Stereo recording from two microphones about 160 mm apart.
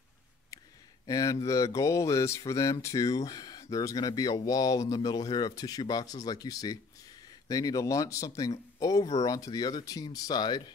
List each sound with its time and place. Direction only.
1.0 s speech: 20° left (ahead or behind)